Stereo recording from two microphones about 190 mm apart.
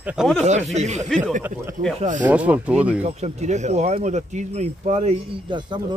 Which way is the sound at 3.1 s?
35° right (ahead or behind).